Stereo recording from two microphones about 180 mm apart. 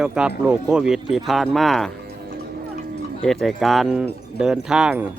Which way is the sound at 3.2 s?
Centre (ahead or behind).